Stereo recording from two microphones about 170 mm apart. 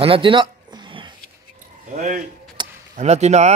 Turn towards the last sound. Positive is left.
turn(degrees=-40)  # may be behind; listen again after turning